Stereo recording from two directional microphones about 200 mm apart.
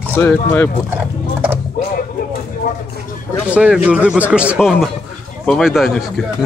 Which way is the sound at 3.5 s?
5° right (ahead or behind).